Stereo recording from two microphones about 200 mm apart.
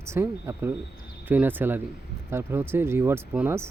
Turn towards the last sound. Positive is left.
turn(degrees=-10)  # may be behind; listen again after turning